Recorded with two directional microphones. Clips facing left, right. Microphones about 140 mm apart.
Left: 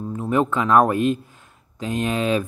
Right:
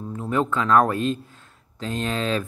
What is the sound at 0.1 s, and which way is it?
A man's voice, 15° left (ahead or behind).